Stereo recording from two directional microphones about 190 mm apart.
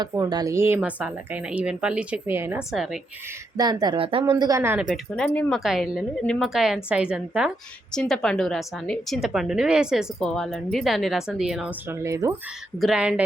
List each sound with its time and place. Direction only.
0.0 s speech: 20° right (ahead or behind); by 3.0 s centre (ahead or behind)
3.6 s speech: 20° right (ahead or behind); by 5.2 s 5° right (ahead or behind)
5.2 s a woman's voice: 5° left (ahead or behind); by 12.3 s 15° right (ahead or behind)
12.8 s a woman's voice: 5° right (ahead or behind)